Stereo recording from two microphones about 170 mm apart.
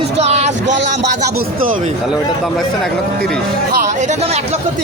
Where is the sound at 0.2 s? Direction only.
40° right (ahead or behind).